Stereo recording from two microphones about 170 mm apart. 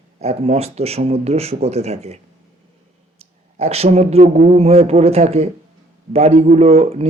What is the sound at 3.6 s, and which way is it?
Speech, 40° right (ahead or behind).